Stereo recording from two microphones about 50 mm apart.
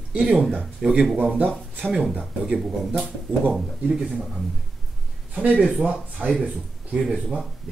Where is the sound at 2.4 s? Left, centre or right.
Centre.